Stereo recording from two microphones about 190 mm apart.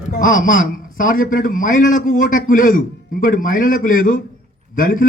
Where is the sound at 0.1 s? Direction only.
45° left (ahead or behind).